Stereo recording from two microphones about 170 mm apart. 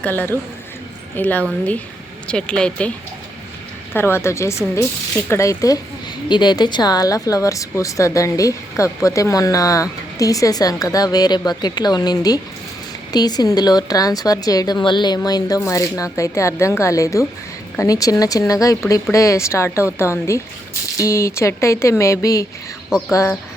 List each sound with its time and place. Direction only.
0.0 s speech: 10° left (ahead or behind)
3.9 s speech: 15° left (ahead or behind)
22.9 s speech: centre (ahead or behind)